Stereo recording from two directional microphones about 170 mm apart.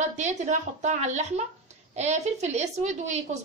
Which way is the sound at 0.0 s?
45° right (ahead or behind).